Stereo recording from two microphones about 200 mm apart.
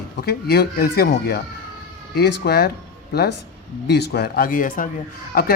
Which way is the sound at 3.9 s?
55° left (ahead or behind).